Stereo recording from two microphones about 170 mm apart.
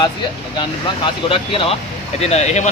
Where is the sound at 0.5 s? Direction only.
30° left (ahead or behind).